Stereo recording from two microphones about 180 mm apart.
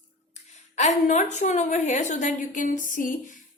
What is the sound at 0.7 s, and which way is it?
A woman's voice, 40° left (ahead or behind).